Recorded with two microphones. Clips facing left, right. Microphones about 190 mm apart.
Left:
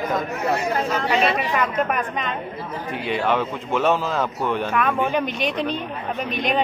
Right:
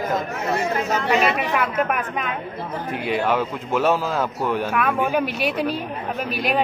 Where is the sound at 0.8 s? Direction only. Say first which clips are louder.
Right 2 dB; 50° right (ahead or behind).